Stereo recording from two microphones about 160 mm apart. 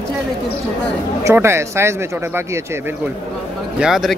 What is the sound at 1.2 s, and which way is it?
A man's voice, 15° right (ahead or behind).